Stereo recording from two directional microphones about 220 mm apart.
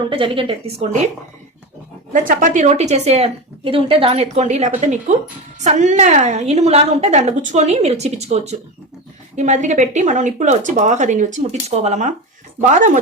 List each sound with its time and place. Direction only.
0.1 s a woman's voice: 25° right (ahead or behind)
2.2 s a woman's voice: 35° right (ahead or behind)